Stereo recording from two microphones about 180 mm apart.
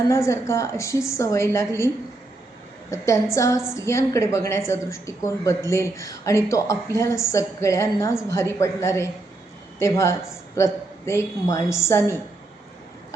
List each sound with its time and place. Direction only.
0.1 s a woman's voice: 15° left (ahead or behind)
2.9 s a woman's voice: 15° left (ahead or behind)